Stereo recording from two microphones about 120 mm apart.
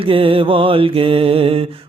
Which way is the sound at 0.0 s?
50° right (ahead or behind).